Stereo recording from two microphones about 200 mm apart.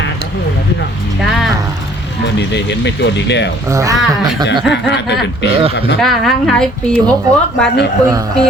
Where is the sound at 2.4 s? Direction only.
60° left (ahead or behind).